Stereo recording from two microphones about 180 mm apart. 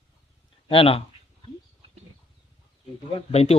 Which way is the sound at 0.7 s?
30° left (ahead or behind).